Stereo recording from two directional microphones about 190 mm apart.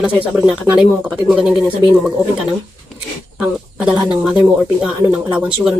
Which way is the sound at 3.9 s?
20° right (ahead or behind).